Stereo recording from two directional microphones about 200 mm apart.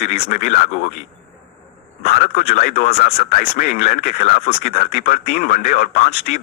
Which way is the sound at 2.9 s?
50° left (ahead or behind).